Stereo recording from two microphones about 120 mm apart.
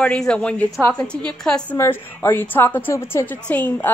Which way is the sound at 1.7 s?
20° left (ahead or behind).